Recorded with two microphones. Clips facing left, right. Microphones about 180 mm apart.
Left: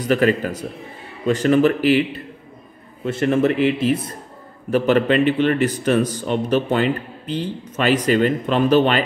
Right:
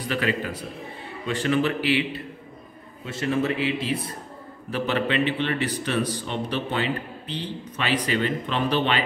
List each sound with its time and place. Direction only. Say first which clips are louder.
0.1 s a man's voice: left 9 dB; 45° left (ahead or behind)
3.1 s a man's voice: left 7 dB; 55° left (ahead or behind)